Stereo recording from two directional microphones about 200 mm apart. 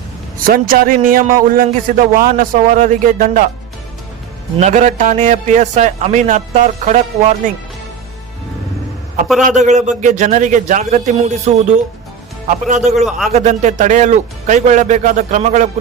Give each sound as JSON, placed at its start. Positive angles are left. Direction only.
{"t": 0.3, "sound": "a man's voice", "side_deg": -45}
{"t": 4.5, "sound": "a man's voice", "side_deg": -35}
{"t": 9.5, "sound": "a man's voice", "side_deg": -35}
{"t": 13.0, "sound": "a man's voice", "side_deg": 0}
{"t": 13.3, "sound": "a man's voice", "side_deg": -35}